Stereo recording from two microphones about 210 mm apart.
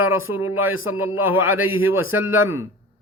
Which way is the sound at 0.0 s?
75° left (ahead or behind).